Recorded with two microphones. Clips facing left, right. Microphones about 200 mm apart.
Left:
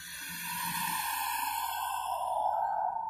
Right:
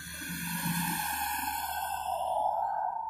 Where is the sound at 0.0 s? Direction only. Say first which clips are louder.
Right 9 dB; 55° right (ahead or behind); by 2.4 s 30° right (ahead or behind).